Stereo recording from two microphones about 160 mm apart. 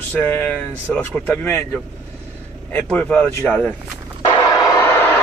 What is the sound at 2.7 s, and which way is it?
A man's voice, 10° left (ahead or behind).